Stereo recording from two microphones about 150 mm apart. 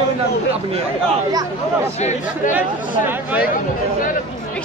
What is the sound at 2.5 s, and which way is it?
Speech, 10° right (ahead or behind).